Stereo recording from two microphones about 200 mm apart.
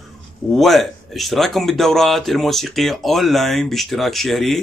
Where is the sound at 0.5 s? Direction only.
Centre (ahead or behind).